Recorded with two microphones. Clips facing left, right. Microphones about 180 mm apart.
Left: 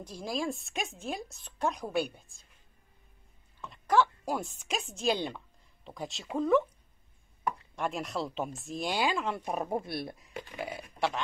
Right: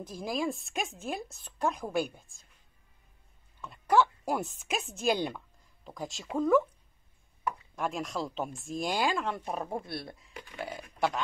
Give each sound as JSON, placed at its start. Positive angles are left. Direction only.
{"t": 0.3, "sound": "speech", "side_deg": 0}
{"t": 3.7, "sound": "speech", "side_deg": -10}
{"t": 7.7, "sound": "speech", "side_deg": 0}
{"t": 10.5, "sound": "speech", "side_deg": 10}